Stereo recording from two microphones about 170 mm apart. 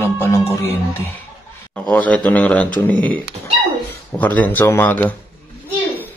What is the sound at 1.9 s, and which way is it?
Speech, 10° left (ahead or behind).